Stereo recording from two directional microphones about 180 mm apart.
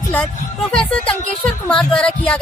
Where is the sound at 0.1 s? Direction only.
5° left (ahead or behind).